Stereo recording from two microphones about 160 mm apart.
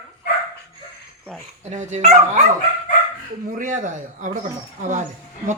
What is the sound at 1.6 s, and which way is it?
Speech, 50° right (ahead or behind).